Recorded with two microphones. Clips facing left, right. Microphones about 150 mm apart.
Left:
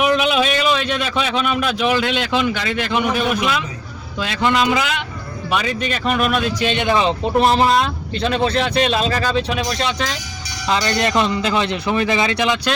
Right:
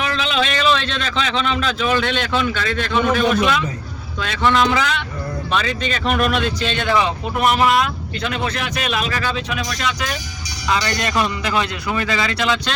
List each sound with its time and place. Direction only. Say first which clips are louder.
0.0 s a man's voice: left 5 dB; 15° left (ahead or behind)
6.6 s a man's voice: left 2 dB; 15° left (ahead or behind)